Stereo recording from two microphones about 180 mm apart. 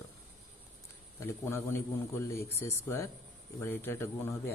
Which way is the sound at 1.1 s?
15° left (ahead or behind).